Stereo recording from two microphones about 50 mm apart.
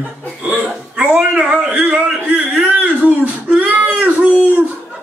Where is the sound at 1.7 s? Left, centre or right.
Right.